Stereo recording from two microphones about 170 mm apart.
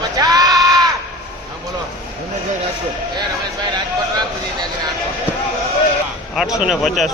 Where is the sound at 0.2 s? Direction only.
20° right (ahead or behind).